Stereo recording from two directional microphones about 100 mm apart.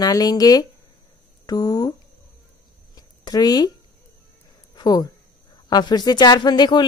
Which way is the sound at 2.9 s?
40° left (ahead or behind).